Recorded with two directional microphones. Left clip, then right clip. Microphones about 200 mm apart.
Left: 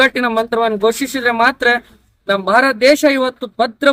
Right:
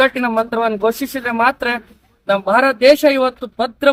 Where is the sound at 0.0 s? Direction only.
15° left (ahead or behind).